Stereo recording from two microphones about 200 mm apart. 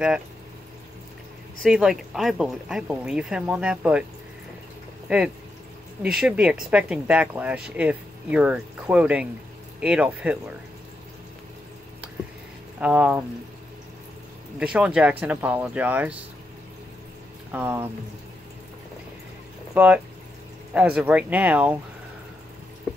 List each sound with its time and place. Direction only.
1.6 s speech: 5° right (ahead or behind)
5.0 s speech: 5° right (ahead or behind)
12.8 s speech: 5° right (ahead or behind)
14.6 s speech: 5° right (ahead or behind)
17.5 s speech: 10° right (ahead or behind)
19.7 s speech: 5° right (ahead or behind)